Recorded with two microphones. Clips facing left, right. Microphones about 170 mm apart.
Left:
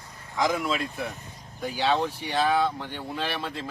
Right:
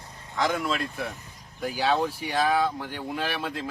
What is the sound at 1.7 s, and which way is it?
A man's voice, 10° right (ahead or behind).